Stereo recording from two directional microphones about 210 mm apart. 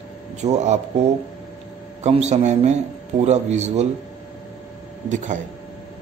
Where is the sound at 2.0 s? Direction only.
30° right (ahead or behind).